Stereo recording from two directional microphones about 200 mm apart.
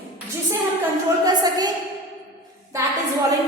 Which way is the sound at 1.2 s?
20° right (ahead or behind).